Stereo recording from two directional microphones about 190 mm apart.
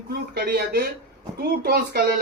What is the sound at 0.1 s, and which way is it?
A woman's voice, 55° right (ahead or behind).